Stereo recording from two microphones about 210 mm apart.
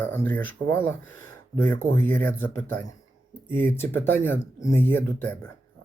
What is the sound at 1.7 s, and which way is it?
Speech, 40° right (ahead or behind).